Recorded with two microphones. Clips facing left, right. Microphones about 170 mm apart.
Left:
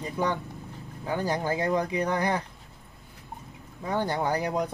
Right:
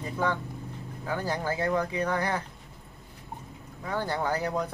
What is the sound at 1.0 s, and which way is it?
Speech, 15° left (ahead or behind).